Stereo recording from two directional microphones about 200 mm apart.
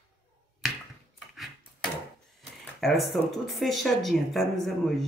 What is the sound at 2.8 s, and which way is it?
Speech, centre (ahead or behind).